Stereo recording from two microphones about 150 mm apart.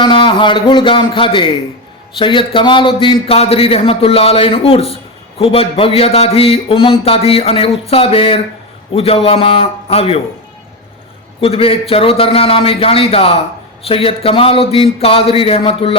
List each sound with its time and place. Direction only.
0.0 s speech: 30° left (ahead or behind)
11.3 s speech: 40° left (ahead or behind)